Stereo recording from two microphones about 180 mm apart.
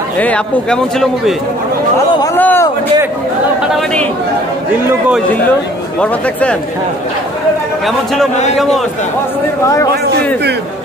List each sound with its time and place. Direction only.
0.2 s a man's voice: 5° left (ahead or behind)
2.3 s a man's voice: 10° left (ahead or behind)
3.7 s a man's voice: 5° left (ahead or behind)
8.5 s a man's voice: centre (ahead or behind)